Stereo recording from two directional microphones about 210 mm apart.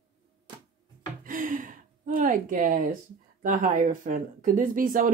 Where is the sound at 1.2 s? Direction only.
40° right (ahead or behind).